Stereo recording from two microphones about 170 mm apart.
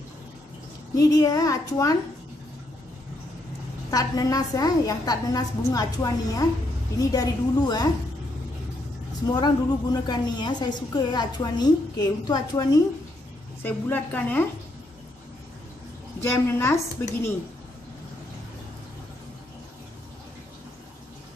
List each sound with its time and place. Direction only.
0.9 s a woman's voice: 20° left (ahead or behind)
3.9 s a woman's voice: 20° left (ahead or behind)
9.3 s a woman's voice: 25° left (ahead or behind)
13.6 s a woman's voice: 10° left (ahead or behind)
16.2 s a woman's voice: 15° left (ahead or behind)